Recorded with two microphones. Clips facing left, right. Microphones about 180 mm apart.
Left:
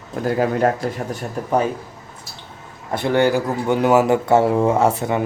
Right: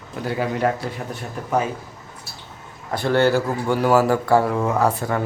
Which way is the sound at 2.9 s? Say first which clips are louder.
Left 1 dB; 20° left (ahead or behind).